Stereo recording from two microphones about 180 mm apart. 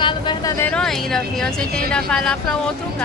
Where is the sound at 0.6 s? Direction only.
5° left (ahead or behind).